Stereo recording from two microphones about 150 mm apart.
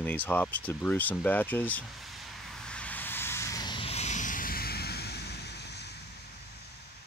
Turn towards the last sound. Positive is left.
turn(degrees=90)